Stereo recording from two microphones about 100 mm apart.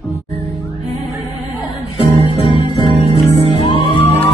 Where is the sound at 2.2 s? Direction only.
70° left (ahead or behind).